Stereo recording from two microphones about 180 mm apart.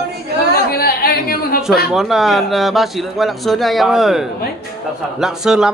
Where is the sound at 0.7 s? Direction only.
60° left (ahead or behind).